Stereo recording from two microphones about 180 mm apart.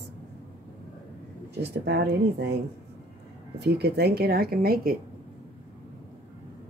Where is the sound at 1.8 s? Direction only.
70° right (ahead or behind).